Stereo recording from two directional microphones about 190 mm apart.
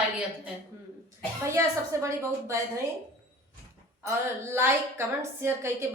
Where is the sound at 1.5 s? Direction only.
15° right (ahead or behind).